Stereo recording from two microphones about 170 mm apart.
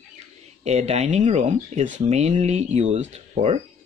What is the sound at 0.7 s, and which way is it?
Speech, 40° right (ahead or behind).